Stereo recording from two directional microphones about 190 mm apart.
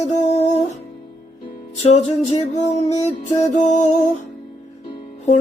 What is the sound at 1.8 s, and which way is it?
Music, 35° left (ahead or behind).